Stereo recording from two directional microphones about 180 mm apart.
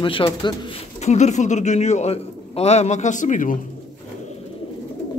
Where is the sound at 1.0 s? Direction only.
40° left (ahead or behind).